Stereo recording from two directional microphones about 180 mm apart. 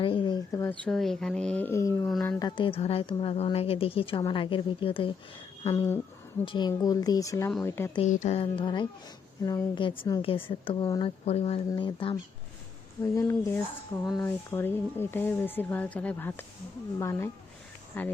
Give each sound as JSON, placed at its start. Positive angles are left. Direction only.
{"t": 0.0, "sound": "speech", "side_deg": 30}
{"t": 0.5, "sound": "speech", "side_deg": 15}
{"t": 0.9, "sound": "speech", "side_deg": 0}
{"t": 2.0, "sound": "speech", "side_deg": 5}
{"t": 2.4, "sound": "a woman's voice", "side_deg": 25}
{"t": 5.6, "sound": "speech", "side_deg": 15}
{"t": 8.0, "sound": "a woman's voice", "side_deg": 40}
{"t": 11.3, "sound": "a woman's voice", "side_deg": 35}
{"t": 13.0, "sound": "speech", "side_deg": 15}